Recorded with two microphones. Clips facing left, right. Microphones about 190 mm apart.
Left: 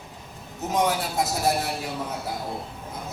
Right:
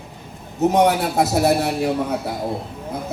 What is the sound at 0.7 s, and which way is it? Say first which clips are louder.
A man's voice: right 5 dB; 65° right (ahead or behind).